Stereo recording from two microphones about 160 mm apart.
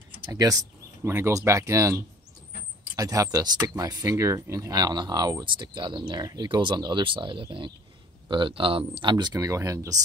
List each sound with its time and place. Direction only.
0.2 s speech: 20° right (ahead or behind)